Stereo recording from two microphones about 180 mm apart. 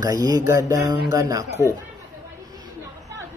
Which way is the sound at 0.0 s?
20° right (ahead or behind).